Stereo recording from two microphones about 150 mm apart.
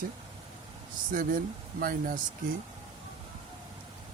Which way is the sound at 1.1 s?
65° right (ahead or behind).